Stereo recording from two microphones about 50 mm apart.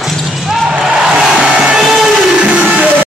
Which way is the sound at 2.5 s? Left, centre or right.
Right.